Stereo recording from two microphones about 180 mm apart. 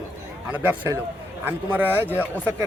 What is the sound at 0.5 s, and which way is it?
A man's voice, 10° right (ahead or behind).